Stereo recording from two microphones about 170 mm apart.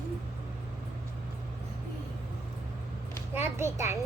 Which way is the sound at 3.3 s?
15° right (ahead or behind).